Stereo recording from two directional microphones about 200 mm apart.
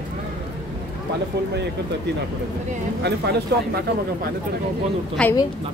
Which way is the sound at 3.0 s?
55° right (ahead or behind).